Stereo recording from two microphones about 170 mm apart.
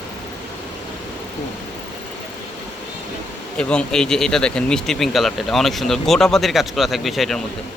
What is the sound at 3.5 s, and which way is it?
Speech, 5° left (ahead or behind).